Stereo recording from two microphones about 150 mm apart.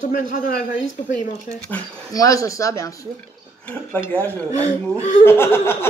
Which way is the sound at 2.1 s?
20° left (ahead or behind).